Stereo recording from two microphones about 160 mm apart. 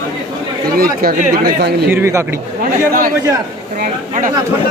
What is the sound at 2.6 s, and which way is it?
A man's voice, 60° right (ahead or behind).